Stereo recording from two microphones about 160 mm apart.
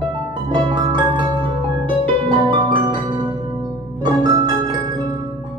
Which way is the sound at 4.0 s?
25° right (ahead or behind).